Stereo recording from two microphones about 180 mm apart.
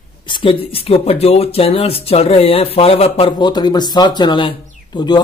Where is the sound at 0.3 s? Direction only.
30° left (ahead or behind).